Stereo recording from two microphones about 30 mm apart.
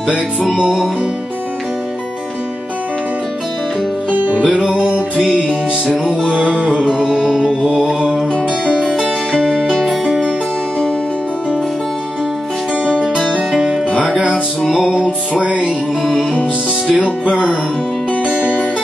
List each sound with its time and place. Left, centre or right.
4.1 s music: right
4.4 s music: right
6.5 s music: right
7.7 s mantra: right
8.7 s music: right
14.0 s music: right
16.9 s music: right